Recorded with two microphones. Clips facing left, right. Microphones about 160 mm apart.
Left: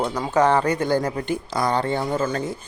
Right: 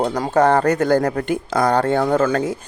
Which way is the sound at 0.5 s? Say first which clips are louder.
Right 4 dB; 45° right (ahead or behind).